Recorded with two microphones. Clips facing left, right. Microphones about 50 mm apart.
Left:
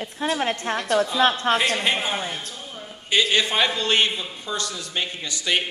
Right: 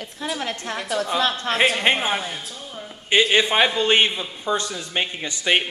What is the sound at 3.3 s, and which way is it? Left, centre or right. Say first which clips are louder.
A man's voice: right 3 dB; right.